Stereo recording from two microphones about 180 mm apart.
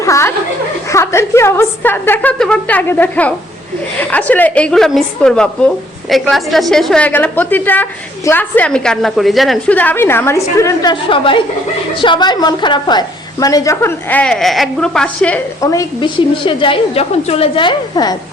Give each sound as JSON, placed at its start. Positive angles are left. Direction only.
{"t": 0.0, "sound": "chuckle", "side_deg": 15}
{"t": 0.9, "sound": "a woman's voice", "side_deg": 15}
{"t": 15.6, "sound": "a woman's voice", "side_deg": 20}